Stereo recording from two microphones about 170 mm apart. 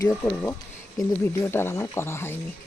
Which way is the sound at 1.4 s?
15° left (ahead or behind).